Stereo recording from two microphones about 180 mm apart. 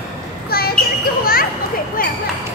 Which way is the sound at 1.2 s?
55° left (ahead or behind).